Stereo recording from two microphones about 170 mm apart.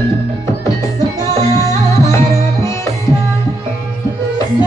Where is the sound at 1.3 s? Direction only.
20° left (ahead or behind).